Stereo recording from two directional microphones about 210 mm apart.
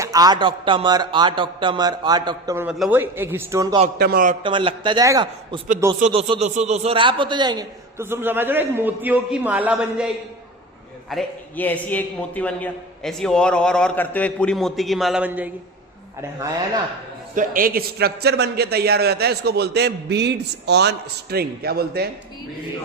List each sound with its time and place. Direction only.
0.0 s speech: 15° right (ahead or behind)
2.6 s a man's voice: 5° right (ahead or behind)
3.9 s a man's voice: 45° right (ahead or behind)
4.4 s a man's voice: 25° right (ahead or behind); by 10.1 s 5° right (ahead or behind)
11.1 s a man's voice: 5° left (ahead or behind)
17.3 s a man's voice: 40° right (ahead or behind)